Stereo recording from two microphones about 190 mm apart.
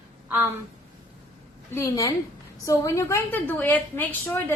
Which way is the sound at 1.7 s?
15° left (ahead or behind).